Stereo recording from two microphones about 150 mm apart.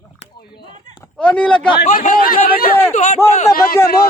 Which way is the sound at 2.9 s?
50° left (ahead or behind).